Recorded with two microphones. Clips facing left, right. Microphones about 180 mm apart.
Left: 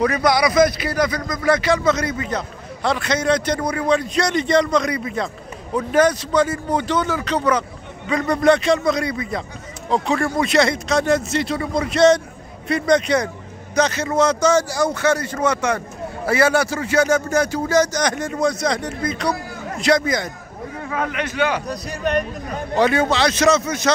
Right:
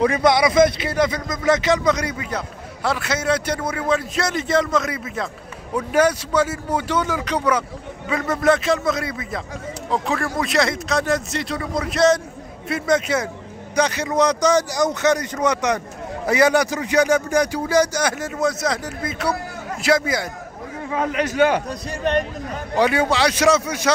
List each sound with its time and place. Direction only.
0.0 s speech: 25° right (ahead or behind); by 20.2 s 5° right (ahead or behind)
20.9 s a man's voice: 30° right (ahead or behind); by 21.6 s 45° right (ahead or behind)
21.6 s a man's voice: 25° right (ahead or behind)
22.8 s speech: 10° right (ahead or behind)